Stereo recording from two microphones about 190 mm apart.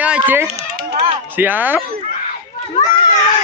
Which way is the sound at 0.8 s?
55° right (ahead or behind).